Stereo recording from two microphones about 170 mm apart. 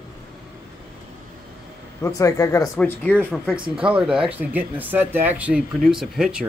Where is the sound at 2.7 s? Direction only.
10° left (ahead or behind).